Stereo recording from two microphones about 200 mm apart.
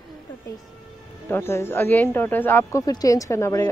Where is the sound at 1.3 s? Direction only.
10° left (ahead or behind).